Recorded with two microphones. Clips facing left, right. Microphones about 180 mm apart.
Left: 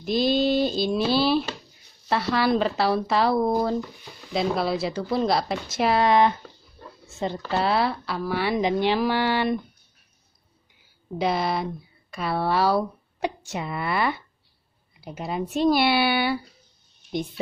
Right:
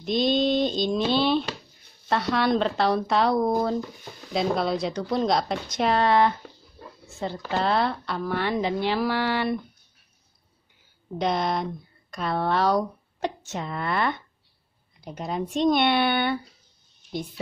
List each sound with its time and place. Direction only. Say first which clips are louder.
0.0 s speech: left 1 dB; 5° left (ahead or behind)
7.5 s speech: even; 5° left (ahead or behind)
11.1 s speech: left 1 dB; 5° left (ahead or behind)